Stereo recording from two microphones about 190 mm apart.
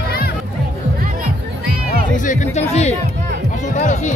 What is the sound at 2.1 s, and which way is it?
Speech, 40° left (ahead or behind).